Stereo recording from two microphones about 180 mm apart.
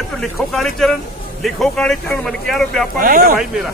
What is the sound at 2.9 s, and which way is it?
Speech, 50° right (ahead or behind).